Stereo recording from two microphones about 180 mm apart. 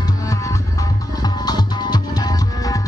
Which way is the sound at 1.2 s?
20° left (ahead or behind).